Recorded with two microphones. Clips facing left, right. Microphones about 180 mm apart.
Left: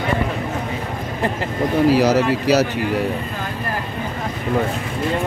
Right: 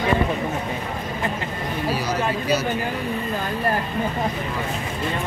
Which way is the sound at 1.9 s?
85° left.